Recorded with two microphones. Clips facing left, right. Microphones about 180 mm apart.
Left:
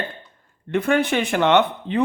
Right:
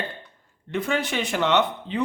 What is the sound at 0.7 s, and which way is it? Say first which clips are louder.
Speech: left 6 dB; 60° left (ahead or behind).